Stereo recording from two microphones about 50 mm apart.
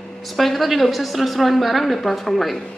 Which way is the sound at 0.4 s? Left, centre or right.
Centre.